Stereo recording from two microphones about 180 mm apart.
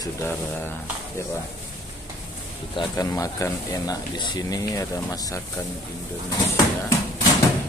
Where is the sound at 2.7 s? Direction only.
20° left (ahead or behind).